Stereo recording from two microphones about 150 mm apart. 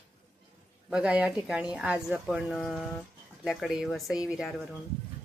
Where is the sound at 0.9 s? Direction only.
5° right (ahead or behind).